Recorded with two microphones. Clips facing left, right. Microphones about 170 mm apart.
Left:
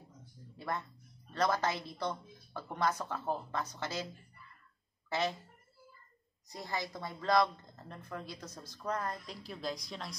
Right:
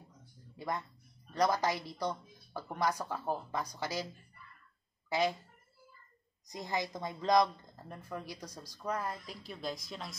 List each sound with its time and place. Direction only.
0.6 s a woman's voice: 15° right (ahead or behind)
5.1 s a woman's voice: 10° right (ahead or behind)
6.5 s a woman's voice: 20° right (ahead or behind); by 10.1 s centre (ahead or behind)